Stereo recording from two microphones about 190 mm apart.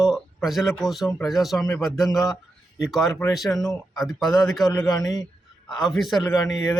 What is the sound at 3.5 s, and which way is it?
Speech, 15° left (ahead or behind).